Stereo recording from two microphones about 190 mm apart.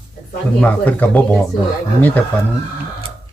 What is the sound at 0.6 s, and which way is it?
Speech, 5° left (ahead or behind).